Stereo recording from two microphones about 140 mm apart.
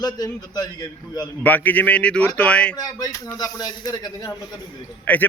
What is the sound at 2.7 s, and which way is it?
A man's voice, 25° left (ahead or behind).